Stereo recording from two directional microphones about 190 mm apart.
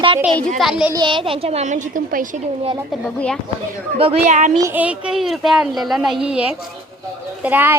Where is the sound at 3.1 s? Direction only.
5° left (ahead or behind).